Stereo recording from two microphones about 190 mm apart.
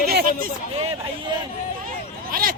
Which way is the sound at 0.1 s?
50° right (ahead or behind).